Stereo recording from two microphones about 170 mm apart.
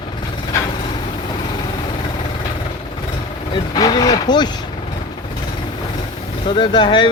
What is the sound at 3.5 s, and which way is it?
Speech, 25° left (ahead or behind).